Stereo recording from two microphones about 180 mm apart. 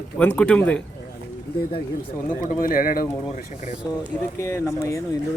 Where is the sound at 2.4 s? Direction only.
50° left (ahead or behind).